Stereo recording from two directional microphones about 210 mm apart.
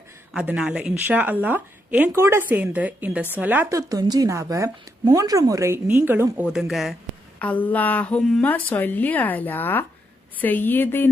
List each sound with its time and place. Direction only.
0.3 s a woman's voice: 5° right (ahead or behind)